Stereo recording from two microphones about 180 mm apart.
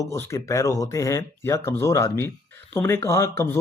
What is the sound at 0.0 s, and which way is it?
Speech, 15° left (ahead or behind).